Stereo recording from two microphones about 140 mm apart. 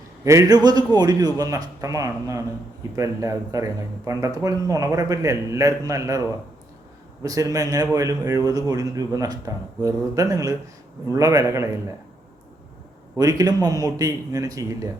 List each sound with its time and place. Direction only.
0.3 s speech: 25° right (ahead or behind)
13.1 s speech: 25° right (ahead or behind)